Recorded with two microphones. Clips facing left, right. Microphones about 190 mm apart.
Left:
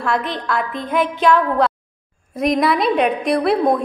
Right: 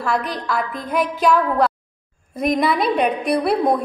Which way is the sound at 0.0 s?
Centre (ahead or behind).